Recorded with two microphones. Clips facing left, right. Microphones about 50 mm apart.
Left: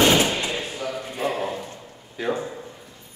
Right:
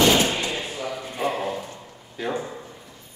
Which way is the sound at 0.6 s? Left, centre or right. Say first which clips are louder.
Left 1 dB; centre.